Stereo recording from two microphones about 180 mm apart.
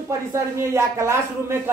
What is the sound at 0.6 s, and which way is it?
A man's voice, 15° right (ahead or behind).